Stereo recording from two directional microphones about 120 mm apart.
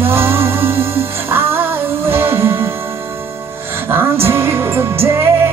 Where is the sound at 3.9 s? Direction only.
20° right (ahead or behind).